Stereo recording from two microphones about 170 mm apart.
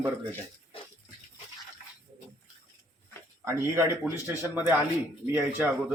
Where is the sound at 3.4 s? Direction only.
15° right (ahead or behind).